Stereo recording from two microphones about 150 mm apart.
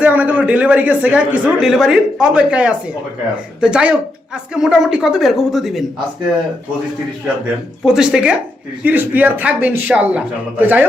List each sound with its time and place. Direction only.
0.0 s a woman's voice: 10° right (ahead or behind)
7.9 s a woman's voice: 5° right (ahead or behind)